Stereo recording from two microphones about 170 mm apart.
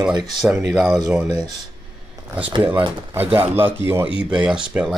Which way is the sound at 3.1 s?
10° right (ahead or behind).